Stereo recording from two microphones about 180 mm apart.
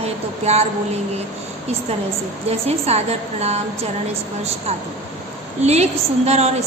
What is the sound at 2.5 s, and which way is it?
A woman's voice, 35° right (ahead or behind).